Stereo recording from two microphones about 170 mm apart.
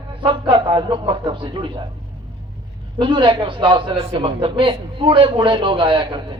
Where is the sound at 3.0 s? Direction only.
30° right (ahead or behind).